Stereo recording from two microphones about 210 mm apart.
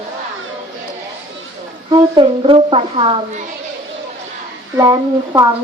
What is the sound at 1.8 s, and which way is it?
A woman's voice, 20° right (ahead or behind).